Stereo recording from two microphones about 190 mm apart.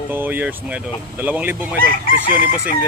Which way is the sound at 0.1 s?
10° right (ahead or behind).